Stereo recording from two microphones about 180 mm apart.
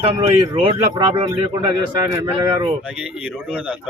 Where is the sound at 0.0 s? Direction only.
30° right (ahead or behind).